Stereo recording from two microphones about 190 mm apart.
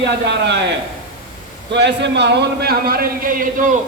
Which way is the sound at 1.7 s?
65° right (ahead or behind).